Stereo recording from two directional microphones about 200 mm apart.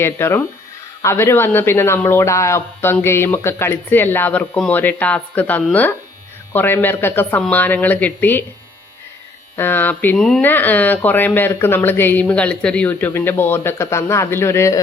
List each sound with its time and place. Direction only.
0.0 s speech: 10° left (ahead or behind)
9.6 s speech: 10° left (ahead or behind)